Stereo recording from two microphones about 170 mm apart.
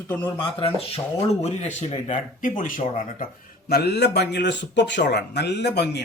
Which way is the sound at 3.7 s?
70° left (ahead or behind).